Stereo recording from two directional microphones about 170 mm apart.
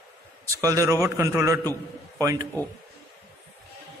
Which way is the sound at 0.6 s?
20° right (ahead or behind).